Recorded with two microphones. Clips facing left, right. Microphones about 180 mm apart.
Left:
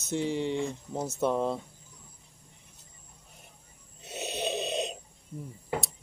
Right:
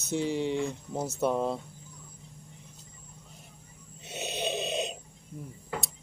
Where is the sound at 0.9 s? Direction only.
5° right (ahead or behind).